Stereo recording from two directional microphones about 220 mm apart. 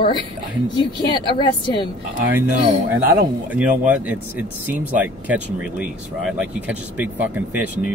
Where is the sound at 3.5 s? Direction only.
5° right (ahead or behind).